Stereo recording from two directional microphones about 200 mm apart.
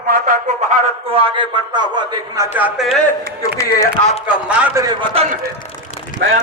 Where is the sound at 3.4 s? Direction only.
15° left (ahead or behind).